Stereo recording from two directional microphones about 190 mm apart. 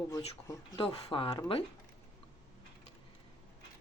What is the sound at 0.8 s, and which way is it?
Speech, 25° left (ahead or behind).